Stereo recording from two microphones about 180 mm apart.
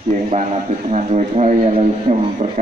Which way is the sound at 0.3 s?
40° right (ahead or behind).